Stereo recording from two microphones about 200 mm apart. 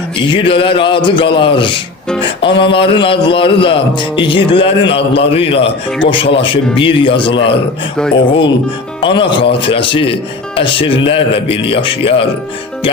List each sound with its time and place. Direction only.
0.3 s speech: 25° left (ahead or behind)